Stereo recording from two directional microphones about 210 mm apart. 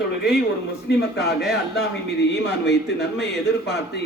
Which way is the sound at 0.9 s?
50° left (ahead or behind).